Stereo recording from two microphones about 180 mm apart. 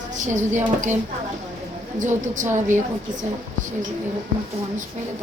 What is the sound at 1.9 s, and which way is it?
Speech, 45° right (ahead or behind).